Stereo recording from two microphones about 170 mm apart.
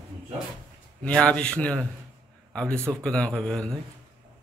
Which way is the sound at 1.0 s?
5° left (ahead or behind).